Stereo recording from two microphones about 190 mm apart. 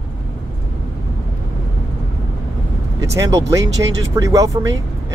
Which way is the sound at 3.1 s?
15° right (ahead or behind).